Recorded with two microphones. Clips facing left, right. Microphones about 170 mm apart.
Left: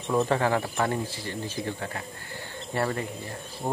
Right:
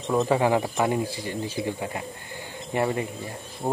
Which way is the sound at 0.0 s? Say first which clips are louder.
Right 2 dB; 15° right (ahead or behind).